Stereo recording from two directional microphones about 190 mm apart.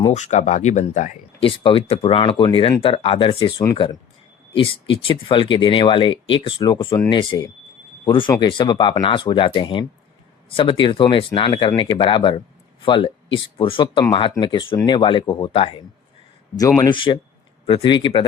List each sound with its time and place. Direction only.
0.0 s speech: 40° left (ahead or behind)
1.4 s speech: 30° left (ahead or behind)
4.5 s speech: 25° left (ahead or behind)